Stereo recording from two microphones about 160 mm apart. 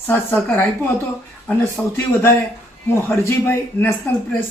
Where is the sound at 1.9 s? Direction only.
15° left (ahead or behind).